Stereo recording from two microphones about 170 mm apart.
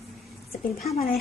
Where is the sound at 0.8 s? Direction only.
40° left (ahead or behind).